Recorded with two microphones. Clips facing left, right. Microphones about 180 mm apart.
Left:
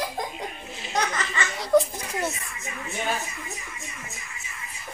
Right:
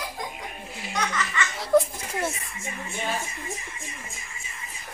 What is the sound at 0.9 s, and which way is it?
Laughter, 35° left (ahead or behind).